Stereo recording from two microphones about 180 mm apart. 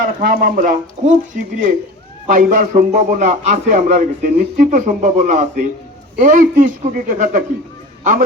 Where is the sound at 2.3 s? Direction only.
50° right (ahead or behind).